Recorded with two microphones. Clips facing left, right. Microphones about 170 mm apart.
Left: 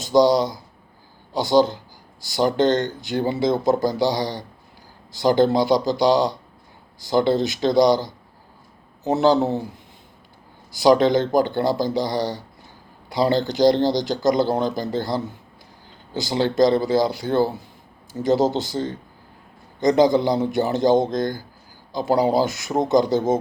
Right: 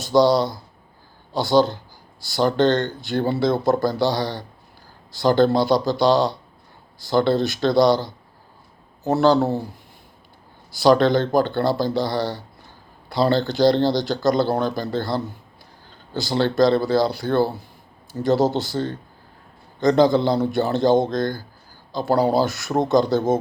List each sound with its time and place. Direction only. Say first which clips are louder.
0.0 s speech: even; 20° left (ahead or behind)
10.8 s speech: even; 15° left (ahead or behind)